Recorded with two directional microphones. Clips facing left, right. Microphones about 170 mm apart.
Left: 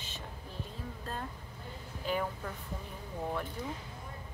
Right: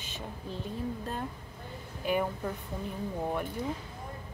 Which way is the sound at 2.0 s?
15° right (ahead or behind).